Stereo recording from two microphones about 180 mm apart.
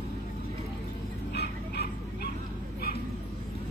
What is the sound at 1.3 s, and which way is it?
Honk, 65° left (ahead or behind).